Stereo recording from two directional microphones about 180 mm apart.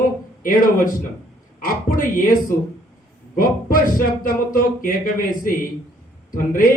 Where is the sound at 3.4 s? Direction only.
50° left (ahead or behind).